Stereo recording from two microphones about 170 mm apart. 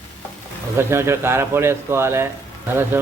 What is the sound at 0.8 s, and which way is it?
Speech, 15° right (ahead or behind).